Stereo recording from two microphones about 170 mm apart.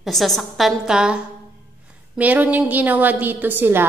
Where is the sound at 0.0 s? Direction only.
Centre (ahead or behind).